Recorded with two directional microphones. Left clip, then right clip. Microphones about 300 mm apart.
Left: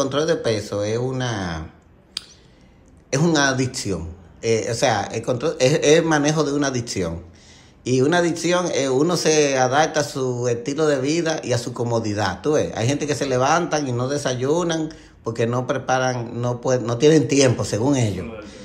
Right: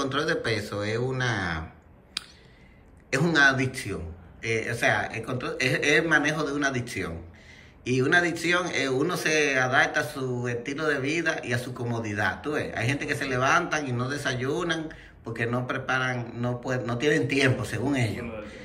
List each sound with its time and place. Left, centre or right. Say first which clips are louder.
0.0 s speech: left 7 dB; centre
2.2 s a sound: left 3 dB; centre
3.1 s speech: left 2 dB; centre